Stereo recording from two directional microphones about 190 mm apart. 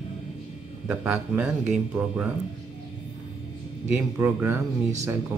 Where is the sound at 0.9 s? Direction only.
10° right (ahead or behind).